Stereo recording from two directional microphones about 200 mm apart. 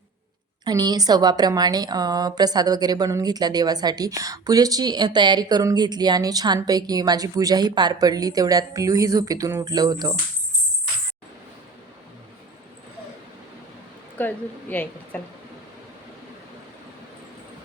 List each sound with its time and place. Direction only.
0.6 s a woman's voice: 20° right (ahead or behind)
14.2 s a woman's voice: 10° left (ahead or behind)